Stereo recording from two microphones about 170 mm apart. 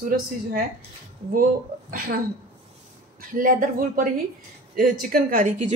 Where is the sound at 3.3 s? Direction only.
55° right (ahead or behind).